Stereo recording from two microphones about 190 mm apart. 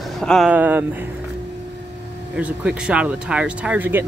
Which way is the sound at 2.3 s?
5° right (ahead or behind).